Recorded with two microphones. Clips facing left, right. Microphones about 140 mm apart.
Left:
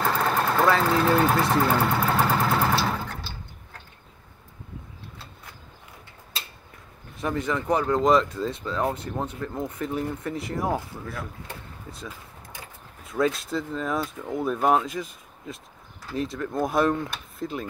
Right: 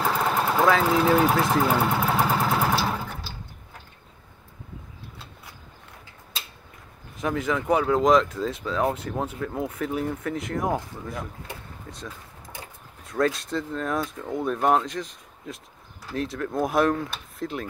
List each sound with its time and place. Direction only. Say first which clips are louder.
0.0 s engine: even; 5° right (ahead or behind)
7.2 s speech: right 1 dB; centre (ahead or behind)
11.1 s speech: right 1 dB; 20° right (ahead or behind)
11.9 s speech: even; centre (ahead or behind)